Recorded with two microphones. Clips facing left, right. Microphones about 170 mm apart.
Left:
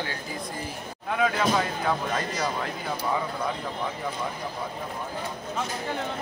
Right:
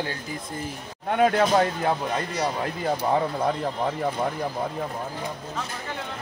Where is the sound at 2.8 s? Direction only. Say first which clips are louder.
Right 7 dB; 55° right (ahead or behind).